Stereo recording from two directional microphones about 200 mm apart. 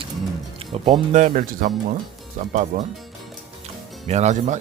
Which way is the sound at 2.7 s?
40° right (ahead or behind).